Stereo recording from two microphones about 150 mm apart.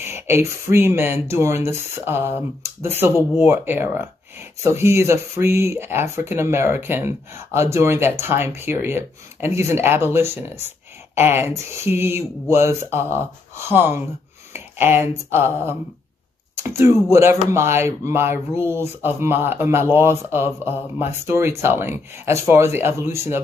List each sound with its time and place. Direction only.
0.0 s speech: 15° right (ahead or behind)